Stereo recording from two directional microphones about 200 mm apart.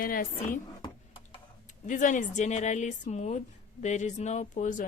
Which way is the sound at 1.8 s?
40° left (ahead or behind).